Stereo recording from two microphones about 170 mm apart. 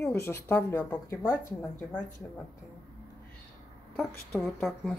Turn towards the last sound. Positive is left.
turn(degrees=0)  # may be behind; listen again after turning